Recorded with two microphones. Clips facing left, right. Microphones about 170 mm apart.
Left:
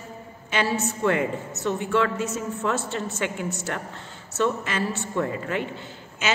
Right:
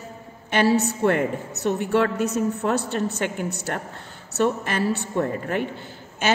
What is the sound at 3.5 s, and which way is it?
Speech, 35° right (ahead or behind).